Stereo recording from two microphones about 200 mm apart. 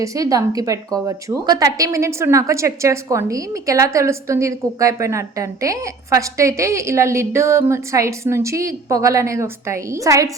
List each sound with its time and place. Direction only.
0.0 s a woman's voice: 15° right (ahead or behind)